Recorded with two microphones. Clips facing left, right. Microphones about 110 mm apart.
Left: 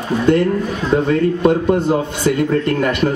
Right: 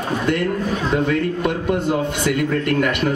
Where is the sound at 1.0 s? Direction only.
30° left (ahead or behind).